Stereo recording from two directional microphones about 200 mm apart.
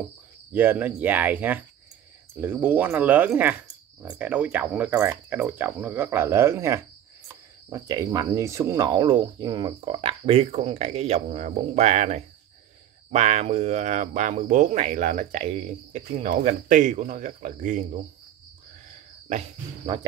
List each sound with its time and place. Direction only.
0.5 s speech: 10° right (ahead or behind); by 17.8 s 40° right (ahead or behind)